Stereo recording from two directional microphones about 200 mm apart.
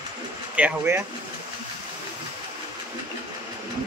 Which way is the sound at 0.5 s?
5° right (ahead or behind).